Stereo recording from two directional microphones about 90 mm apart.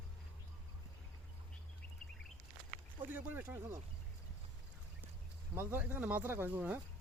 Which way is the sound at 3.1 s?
20° right (ahead or behind).